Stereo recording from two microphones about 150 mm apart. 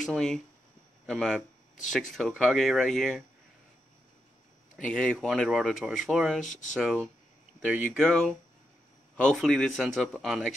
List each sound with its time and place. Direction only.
0.0 s speech: centre (ahead or behind)
4.7 s speech: 5° left (ahead or behind)
6.4 s speech: 55° left (ahead or behind)
6.8 s speech: centre (ahead or behind)